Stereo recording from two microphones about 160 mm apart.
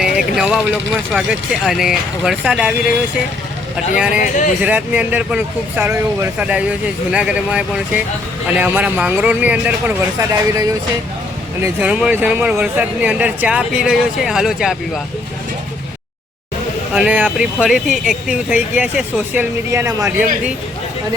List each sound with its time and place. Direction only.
0.3 s speech: 5° right (ahead or behind)
3.9 s speech: 5° right (ahead or behind)
4.2 s speech: 55° left (ahead or behind)
4.6 s speech: 10° right (ahead or behind)
10.2 s speech: 20° right (ahead or behind)
11.6 s speech: 10° right (ahead or behind)
16.9 s speech: 5° right (ahead or behind)